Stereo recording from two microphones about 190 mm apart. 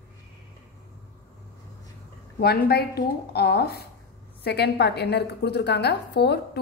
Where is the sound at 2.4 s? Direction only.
55° left (ahead or behind).